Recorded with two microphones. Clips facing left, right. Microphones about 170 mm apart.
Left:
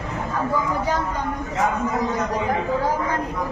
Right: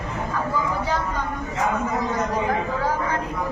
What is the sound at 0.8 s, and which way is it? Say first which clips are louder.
Speech: left 1 dB; 15° left (ahead or behind).